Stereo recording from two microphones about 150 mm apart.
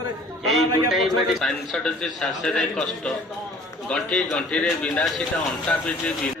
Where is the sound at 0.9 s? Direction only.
Centre (ahead or behind).